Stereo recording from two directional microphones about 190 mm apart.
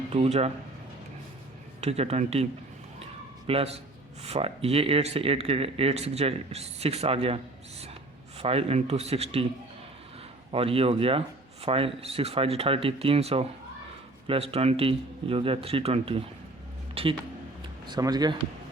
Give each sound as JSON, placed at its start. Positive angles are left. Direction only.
{"t": 0.1, "sound": "speech", "side_deg": -35}
{"t": 1.8, "sound": "speech", "side_deg": -35}
{"t": 3.0, "sound": "a sound", "side_deg": -30}
{"t": 4.2, "sound": "speech", "side_deg": -30}
{"t": 8.4, "sound": "speech", "side_deg": -30}
{"t": 10.5, "sound": "speech", "side_deg": -30}